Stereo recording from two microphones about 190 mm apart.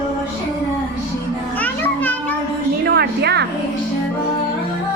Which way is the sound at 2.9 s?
60° right (ahead or behind).